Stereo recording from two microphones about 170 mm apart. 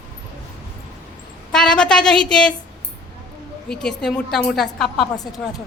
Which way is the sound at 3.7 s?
5° left (ahead or behind).